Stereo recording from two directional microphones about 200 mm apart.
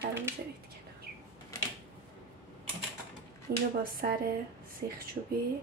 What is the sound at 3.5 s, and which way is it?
Speech, 50° right (ahead or behind).